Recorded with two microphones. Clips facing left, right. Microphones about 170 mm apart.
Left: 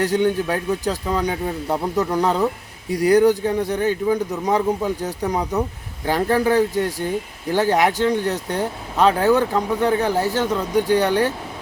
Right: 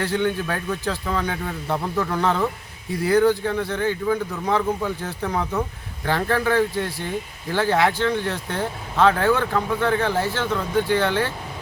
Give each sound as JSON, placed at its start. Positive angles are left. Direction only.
{"t": 0.0, "sound": "speech", "side_deg": 15}
{"t": 10.2, "sound": "speech", "side_deg": 40}
{"t": 10.4, "sound": "speech", "side_deg": 15}